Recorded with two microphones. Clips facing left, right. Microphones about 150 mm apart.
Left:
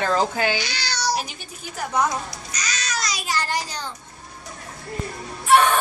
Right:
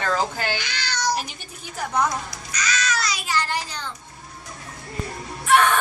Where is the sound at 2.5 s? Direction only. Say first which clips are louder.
Right 5 dB; 40° left (ahead or behind).